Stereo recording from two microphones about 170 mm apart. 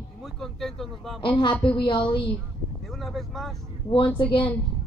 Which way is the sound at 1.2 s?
30° left (ahead or behind).